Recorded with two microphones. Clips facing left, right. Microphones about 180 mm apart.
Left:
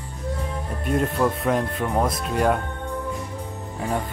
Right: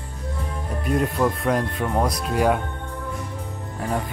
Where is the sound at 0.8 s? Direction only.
Centre (ahead or behind).